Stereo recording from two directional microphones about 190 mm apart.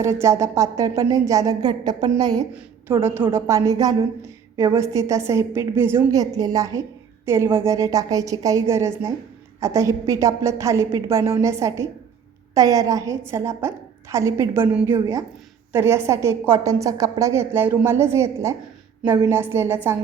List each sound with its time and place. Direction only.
0.0 s a woman's voice: 15° right (ahead or behind)